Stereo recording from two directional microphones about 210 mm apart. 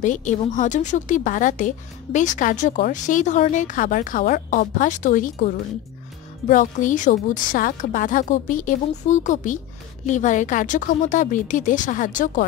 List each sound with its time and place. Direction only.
0.0 s a woman's voice: 35° left (ahead or behind)
6.5 s a woman's voice: 40° left (ahead or behind)